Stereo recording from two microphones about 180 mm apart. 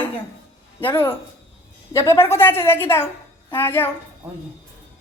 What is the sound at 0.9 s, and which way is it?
A woman's voice, 10° left (ahead or behind).